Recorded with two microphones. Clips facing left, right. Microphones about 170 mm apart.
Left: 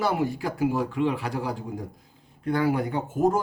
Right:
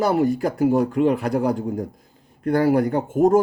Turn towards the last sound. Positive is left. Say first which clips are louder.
# right 7 dB
turn(degrees=-50)  # may be behind; listen again after turning